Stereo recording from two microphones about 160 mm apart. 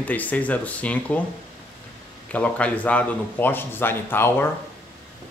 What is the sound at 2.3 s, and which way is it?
Speech, 10° left (ahead or behind).